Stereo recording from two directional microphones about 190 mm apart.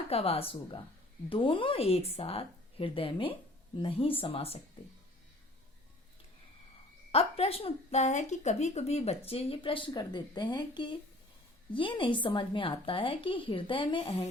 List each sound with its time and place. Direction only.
0.1 s a woman's voice: 30° left (ahead or behind)
7.1 s a woman's voice: 35° left (ahead or behind)